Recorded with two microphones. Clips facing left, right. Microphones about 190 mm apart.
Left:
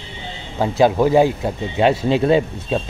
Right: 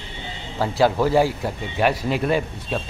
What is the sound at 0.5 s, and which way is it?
Speech, 20° left (ahead or behind).